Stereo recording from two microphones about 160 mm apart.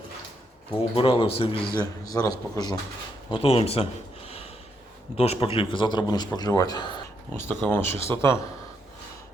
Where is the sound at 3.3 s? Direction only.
35° left (ahead or behind).